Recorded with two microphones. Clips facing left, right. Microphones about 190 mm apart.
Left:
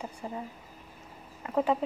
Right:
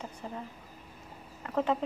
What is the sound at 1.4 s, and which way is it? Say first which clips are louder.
Speech: left 2 dB; 10° left (ahead or behind).